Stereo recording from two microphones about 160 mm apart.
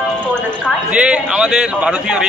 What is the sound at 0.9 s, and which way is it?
A man's voice, 5° right (ahead or behind).